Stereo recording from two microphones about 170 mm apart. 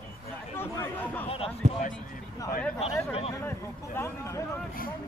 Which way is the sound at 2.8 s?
35° left (ahead or behind).